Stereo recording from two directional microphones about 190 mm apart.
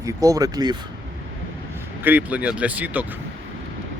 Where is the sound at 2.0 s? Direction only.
10° right (ahead or behind).